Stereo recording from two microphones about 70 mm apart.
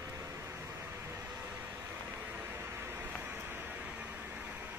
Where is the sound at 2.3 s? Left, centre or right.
Right.